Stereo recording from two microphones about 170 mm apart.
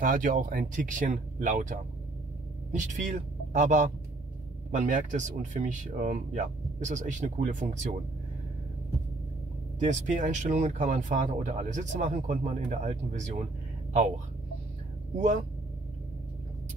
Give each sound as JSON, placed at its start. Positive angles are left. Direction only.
{"t": 0.0, "sound": "speech", "side_deg": -55}
{"t": 9.8, "sound": "speech", "side_deg": -45}
{"t": 15.1, "sound": "speech", "side_deg": -45}